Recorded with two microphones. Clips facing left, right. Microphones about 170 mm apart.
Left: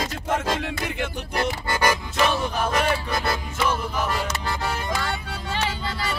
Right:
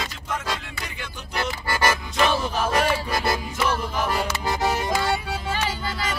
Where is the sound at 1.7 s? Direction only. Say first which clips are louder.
Even; 15° left (ahead or behind).